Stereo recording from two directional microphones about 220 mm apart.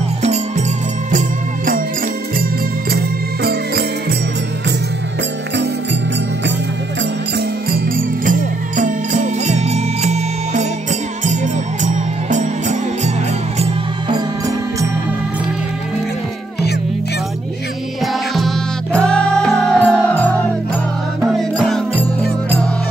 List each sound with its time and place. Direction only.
0.2 s music: 30° right (ahead or behind)
2.9 s music: 45° right (ahead or behind)
7.3 s music: 40° right (ahead or behind)
13.6 s music: 20° right (ahead or behind)
18.0 s music: centre (ahead or behind)